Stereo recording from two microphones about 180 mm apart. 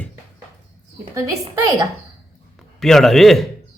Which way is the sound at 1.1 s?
15° right (ahead or behind).